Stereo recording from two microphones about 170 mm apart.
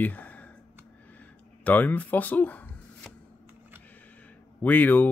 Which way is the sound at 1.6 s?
10° left (ahead or behind).